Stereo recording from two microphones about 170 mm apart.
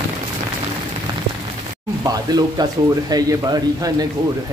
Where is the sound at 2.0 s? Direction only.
20° right (ahead or behind).